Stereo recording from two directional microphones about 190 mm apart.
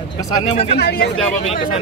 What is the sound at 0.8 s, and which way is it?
Speech, 55° left (ahead or behind).